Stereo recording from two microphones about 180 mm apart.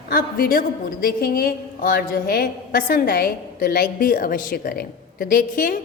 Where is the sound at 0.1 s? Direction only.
55° left (ahead or behind).